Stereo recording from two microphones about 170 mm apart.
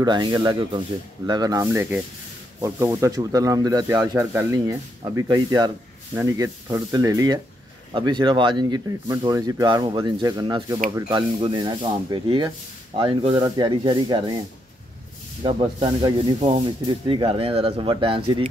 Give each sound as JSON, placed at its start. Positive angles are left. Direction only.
{"t": 0.0, "sound": "speech", "side_deg": -25}
{"t": 15.4, "sound": "speech", "side_deg": -25}